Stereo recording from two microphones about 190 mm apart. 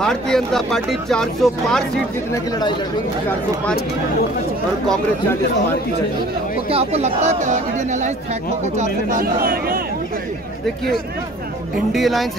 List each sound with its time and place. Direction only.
0.0 s speech: 5° left (ahead or behind)
6.7 s speech: 35° right (ahead or behind); by 9.8 s 50° right (ahead or behind)
11.9 s speech: centre (ahead or behind)